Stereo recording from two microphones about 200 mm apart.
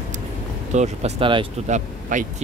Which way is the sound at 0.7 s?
35° right (ahead or behind).